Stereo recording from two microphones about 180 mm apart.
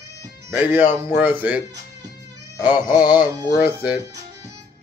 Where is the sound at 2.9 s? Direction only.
25° left (ahead or behind).